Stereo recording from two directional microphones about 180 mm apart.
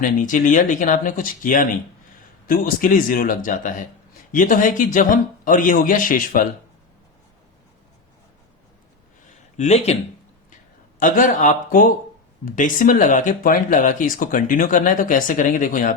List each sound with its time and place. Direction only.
0.0 s speech: 45° left (ahead or behind)
9.6 s speech: 40° left (ahead or behind)
11.0 s speech: 45° left (ahead or behind)